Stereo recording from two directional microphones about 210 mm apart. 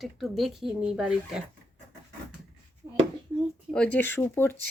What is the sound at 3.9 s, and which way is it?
Speech, 10° left (ahead or behind).